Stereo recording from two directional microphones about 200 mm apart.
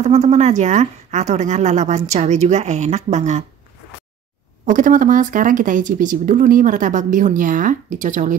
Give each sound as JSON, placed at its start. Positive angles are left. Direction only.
{"t": 0.0, "sound": "speech", "side_deg": -35}
{"t": 4.6, "sound": "speech", "side_deg": -40}